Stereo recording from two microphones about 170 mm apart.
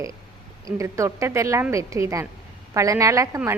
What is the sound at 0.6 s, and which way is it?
A woman's voice, 20° right (ahead or behind).